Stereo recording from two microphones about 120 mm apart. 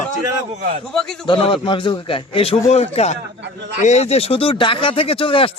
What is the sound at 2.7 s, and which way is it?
A man's voice, 65° left (ahead or behind).